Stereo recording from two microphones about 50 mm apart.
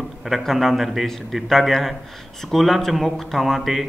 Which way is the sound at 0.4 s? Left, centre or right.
Centre.